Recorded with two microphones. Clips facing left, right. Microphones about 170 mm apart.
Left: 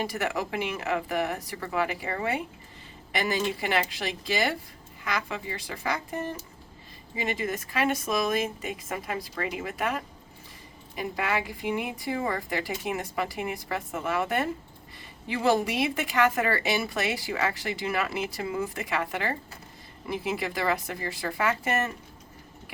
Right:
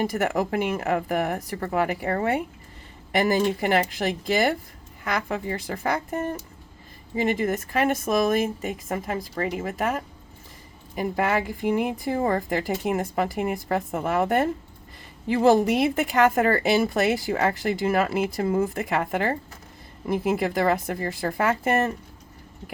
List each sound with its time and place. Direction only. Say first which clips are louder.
0.0 s a woman's voice: right 6 dB; 50° right (ahead or behind)